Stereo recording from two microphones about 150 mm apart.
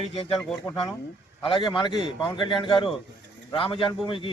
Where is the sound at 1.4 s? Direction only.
30° left (ahead or behind).